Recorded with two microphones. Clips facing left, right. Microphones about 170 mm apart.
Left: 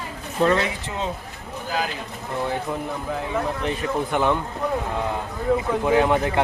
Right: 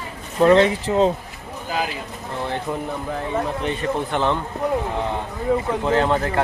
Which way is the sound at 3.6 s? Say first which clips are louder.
Right 1 dB; 10° left (ahead or behind).